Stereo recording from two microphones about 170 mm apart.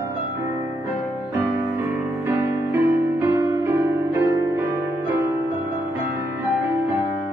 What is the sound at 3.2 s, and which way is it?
Music, 15° right (ahead or behind).